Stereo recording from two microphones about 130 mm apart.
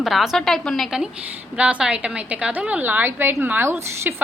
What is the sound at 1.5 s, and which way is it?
A woman's voice, 10° right (ahead or behind).